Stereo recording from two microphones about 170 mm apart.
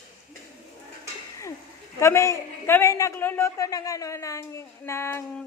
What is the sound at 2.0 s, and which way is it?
A woman's voice, 15° left (ahead or behind).